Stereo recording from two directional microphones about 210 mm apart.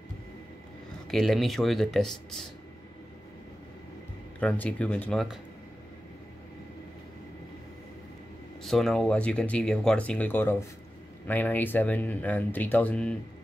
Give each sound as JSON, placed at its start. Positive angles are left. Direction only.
{"t": 1.1, "sound": "speech", "side_deg": 0}
{"t": 4.4, "sound": "speech", "side_deg": 5}
{"t": 8.6, "sound": "speech", "side_deg": 0}